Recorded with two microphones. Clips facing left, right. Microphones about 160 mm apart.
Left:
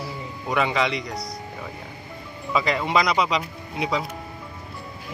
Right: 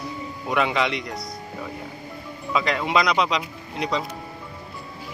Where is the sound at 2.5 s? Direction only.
Centre (ahead or behind).